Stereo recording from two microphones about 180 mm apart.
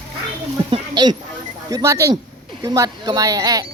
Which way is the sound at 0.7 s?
25° right (ahead or behind).